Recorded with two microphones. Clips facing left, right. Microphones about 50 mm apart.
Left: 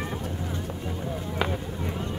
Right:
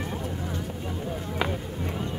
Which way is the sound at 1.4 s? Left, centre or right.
Centre.